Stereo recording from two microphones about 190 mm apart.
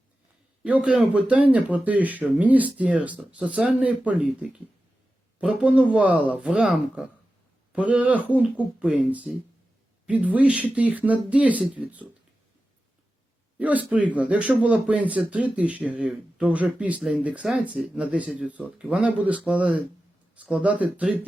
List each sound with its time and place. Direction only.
0.6 s speech: 5° right (ahead or behind)
13.6 s speech: 10° right (ahead or behind)